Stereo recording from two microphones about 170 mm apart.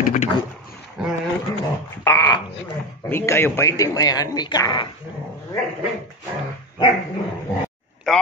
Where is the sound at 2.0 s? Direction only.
20° left (ahead or behind).